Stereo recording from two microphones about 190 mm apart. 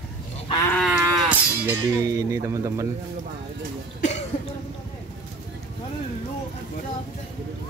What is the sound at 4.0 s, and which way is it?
Cough, 35° left (ahead or behind).